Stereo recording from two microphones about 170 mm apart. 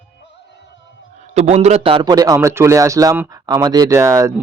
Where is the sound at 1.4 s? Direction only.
40° right (ahead or behind).